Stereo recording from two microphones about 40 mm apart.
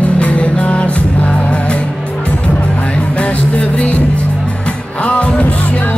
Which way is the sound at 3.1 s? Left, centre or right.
Left.